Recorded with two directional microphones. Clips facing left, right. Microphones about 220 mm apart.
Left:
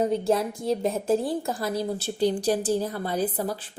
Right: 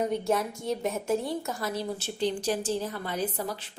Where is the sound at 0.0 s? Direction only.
30° left (ahead or behind).